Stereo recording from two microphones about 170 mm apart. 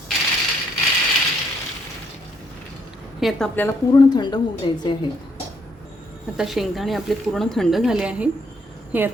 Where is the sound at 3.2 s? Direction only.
5° left (ahead or behind).